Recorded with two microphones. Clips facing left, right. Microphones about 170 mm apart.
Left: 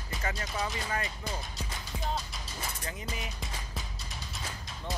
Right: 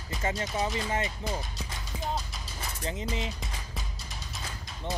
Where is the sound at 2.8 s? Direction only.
25° right (ahead or behind).